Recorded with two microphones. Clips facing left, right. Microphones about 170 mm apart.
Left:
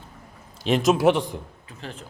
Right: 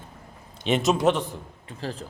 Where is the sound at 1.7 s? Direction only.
35° right (ahead or behind).